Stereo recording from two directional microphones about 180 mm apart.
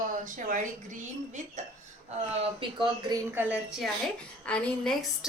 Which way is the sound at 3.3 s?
10° right (ahead or behind).